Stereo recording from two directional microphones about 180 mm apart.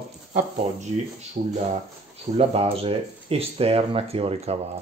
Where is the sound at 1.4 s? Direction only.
40° right (ahead or behind).